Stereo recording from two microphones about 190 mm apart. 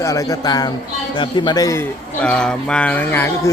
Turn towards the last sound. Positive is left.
turn(degrees=10)  # may be behind; listen again after turning